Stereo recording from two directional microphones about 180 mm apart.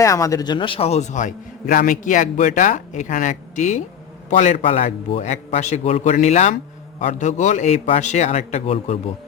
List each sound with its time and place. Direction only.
0.0 s a man's voice: 15° left (ahead or behind); by 9.0 s 35° left (ahead or behind)